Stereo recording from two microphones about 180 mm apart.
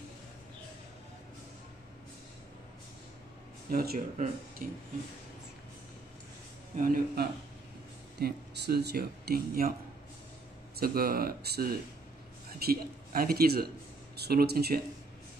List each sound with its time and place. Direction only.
3.7 s speech: 60° right (ahead or behind)
4.6 s speech: 45° right (ahead or behind)
6.8 s speech: 50° right (ahead or behind)
8.2 s speech: 60° right (ahead or behind)
10.8 s a man's voice: 55° right (ahead or behind)